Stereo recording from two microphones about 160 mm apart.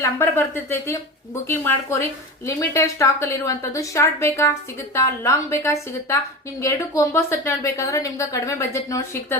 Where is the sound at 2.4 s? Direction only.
15° left (ahead or behind).